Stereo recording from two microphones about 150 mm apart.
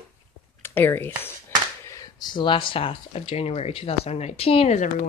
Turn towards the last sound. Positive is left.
turn(degrees=50)  # may be behind; listen again after turning